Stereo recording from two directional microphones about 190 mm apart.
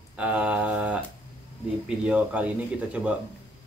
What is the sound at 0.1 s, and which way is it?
Mantra, 5° right (ahead or behind).